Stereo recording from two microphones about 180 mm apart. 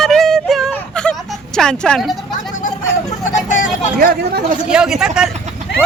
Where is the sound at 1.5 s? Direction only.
5° left (ahead or behind).